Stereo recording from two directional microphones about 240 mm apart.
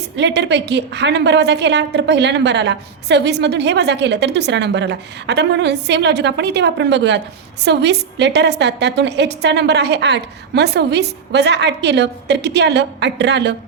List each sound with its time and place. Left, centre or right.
0.2 s a woman's voice: right